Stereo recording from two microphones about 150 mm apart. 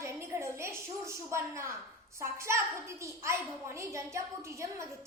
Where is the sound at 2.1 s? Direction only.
20° right (ahead or behind).